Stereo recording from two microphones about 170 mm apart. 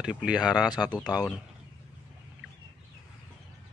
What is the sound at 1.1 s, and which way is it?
Speech, 25° left (ahead or behind).